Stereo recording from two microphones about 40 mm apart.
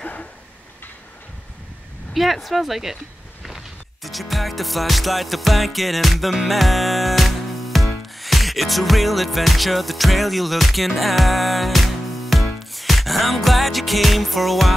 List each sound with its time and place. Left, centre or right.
0.0 s a sound: left
2.1 s speech: centre
3.4 s music: centre